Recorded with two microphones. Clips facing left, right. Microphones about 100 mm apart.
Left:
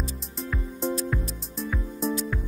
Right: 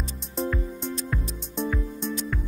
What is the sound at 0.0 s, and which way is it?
Music, centre (ahead or behind).